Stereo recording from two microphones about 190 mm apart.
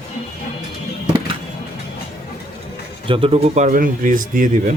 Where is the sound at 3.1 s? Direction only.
30° right (ahead or behind); by 4.5 s 45° right (ahead or behind).